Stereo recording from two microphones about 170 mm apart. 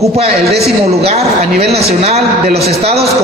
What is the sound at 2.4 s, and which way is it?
Speech, 70° right (ahead or behind).